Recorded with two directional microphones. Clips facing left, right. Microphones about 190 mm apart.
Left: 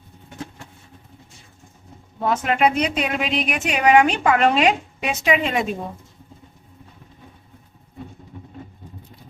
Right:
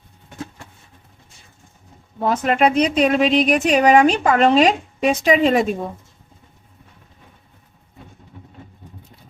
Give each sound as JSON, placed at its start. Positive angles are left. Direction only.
{"t": 2.4, "sound": "speech", "side_deg": -40}